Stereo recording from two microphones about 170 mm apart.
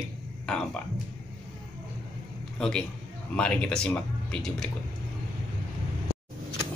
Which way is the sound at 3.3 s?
5° left (ahead or behind).